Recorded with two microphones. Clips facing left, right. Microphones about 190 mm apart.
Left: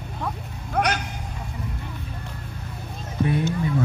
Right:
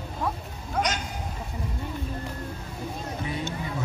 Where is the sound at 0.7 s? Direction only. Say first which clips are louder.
Left 4 dB; 60° left (ahead or behind).